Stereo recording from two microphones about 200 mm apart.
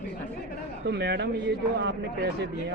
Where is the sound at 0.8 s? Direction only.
55° right (ahead or behind).